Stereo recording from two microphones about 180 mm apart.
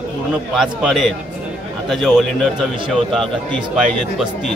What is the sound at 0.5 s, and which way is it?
A man's voice, centre (ahead or behind).